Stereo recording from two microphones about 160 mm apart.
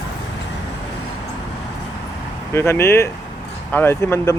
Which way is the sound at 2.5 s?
15° left (ahead or behind).